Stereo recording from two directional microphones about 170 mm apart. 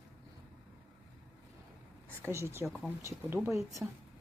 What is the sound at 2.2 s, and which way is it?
Speech, 15° right (ahead or behind).